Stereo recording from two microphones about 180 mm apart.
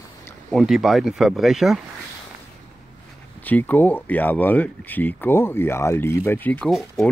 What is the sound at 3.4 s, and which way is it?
Speech, 10° left (ahead or behind).